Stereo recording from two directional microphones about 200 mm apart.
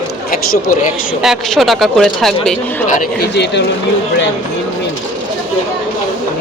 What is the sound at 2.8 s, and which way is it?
Speech, 40° left (ahead or behind).